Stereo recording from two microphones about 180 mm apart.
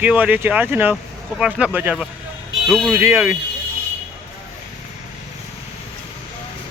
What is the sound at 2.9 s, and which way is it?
Speech, 10° right (ahead or behind).